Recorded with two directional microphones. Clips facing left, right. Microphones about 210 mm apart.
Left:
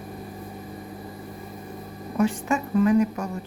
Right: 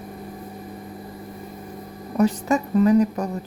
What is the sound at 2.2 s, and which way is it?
A woman's voice, 40° right (ahead or behind).